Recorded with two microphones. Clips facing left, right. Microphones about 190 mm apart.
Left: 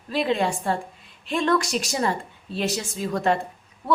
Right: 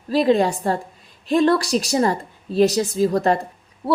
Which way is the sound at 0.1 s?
40° right (ahead or behind).